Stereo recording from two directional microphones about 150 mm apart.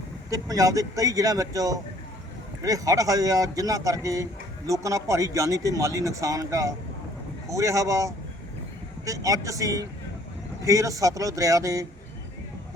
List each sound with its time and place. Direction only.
0.3 s speech: 25° right (ahead or behind)